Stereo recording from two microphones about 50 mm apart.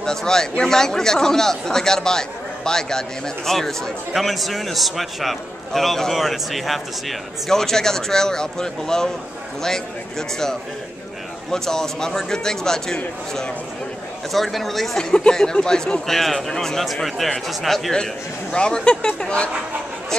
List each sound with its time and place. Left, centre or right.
0.0 s speech: centre
11.5 s speech: centre
15.0 s speech: centre
17.9 s speech: centre